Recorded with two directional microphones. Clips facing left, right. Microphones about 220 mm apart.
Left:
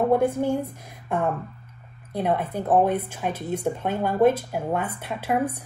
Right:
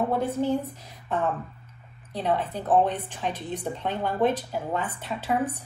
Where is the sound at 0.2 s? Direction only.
10° left (ahead or behind).